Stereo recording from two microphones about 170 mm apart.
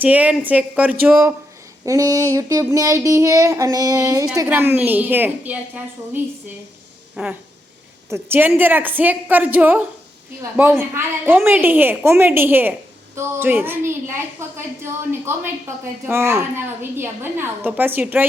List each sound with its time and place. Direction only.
0.0 s a woman's voice: 10° right (ahead or behind)
1.8 s child singing: 20° right (ahead or behind)
4.4 s a woman's voice: 10° right (ahead or behind)